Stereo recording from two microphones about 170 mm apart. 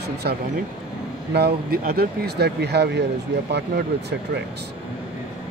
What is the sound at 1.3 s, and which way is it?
Speech, 65° right (ahead or behind).